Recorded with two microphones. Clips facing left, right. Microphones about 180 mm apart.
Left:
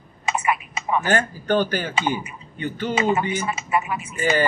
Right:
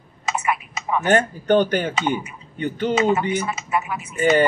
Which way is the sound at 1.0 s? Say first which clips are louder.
Right 8 dB; 20° right (ahead or behind).